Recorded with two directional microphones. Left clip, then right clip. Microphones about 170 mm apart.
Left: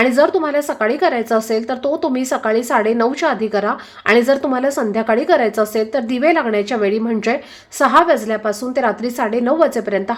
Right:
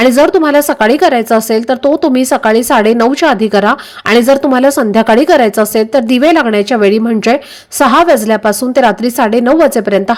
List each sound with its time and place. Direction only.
0.0 s speech: 35° right (ahead or behind)